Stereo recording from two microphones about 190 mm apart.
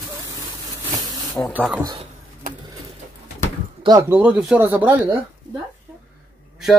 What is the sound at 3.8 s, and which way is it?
Speech, 20° right (ahead or behind).